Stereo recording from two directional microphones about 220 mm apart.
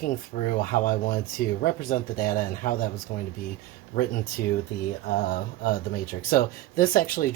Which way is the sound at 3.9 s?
40° left (ahead or behind).